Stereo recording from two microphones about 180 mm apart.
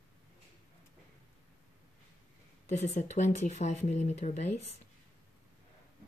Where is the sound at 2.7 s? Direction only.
40° left (ahead or behind).